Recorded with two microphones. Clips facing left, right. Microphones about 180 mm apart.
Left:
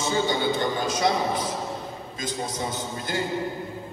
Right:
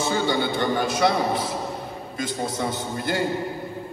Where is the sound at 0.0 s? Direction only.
60° right (ahead or behind).